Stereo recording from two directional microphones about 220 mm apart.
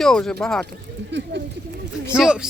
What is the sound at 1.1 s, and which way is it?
Speech, 55° right (ahead or behind).